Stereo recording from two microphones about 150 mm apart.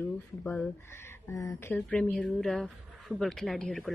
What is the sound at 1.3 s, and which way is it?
Speech, 20° left (ahead or behind).